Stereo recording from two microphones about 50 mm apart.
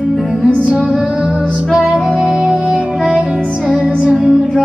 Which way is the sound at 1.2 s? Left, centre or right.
Centre.